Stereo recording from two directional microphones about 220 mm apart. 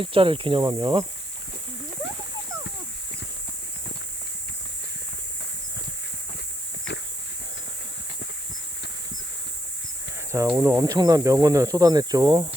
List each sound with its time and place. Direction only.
0.0 s speech: 25° right (ahead or behind)
10.3 s speech: 10° right (ahead or behind)